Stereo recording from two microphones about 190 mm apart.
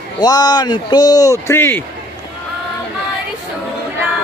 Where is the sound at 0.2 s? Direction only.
20° left (ahead or behind).